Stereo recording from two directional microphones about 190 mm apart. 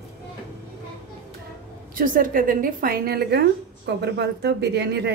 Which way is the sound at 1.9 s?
45° right (ahead or behind).